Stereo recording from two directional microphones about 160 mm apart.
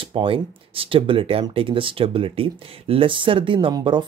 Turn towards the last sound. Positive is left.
turn(degrees=-25)  # may be behind; listen again after turning